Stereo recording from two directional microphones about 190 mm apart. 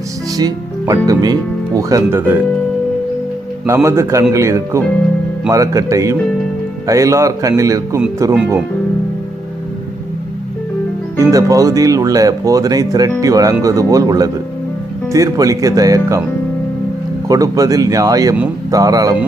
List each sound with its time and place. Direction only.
0.3 s speech: 20° right (ahead or behind)
3.7 s speech: 15° right (ahead or behind)
11.2 s speech: 15° right (ahead or behind)
17.2 s speech: 20° right (ahead or behind)